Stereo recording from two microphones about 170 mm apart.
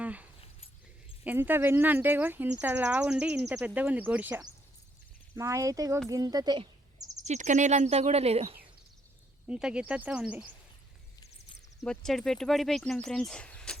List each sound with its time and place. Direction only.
0.0 s a sound: 10° right (ahead or behind)
1.2 s speech: 10° right (ahead or behind)
7.3 s speech: 45° right (ahead or behind)
9.5 s speech: 5° right (ahead or behind)
11.9 s speech: 5° left (ahead or behind)